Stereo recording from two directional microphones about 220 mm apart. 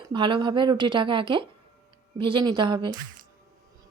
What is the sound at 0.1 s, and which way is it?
Speech, 20° right (ahead or behind).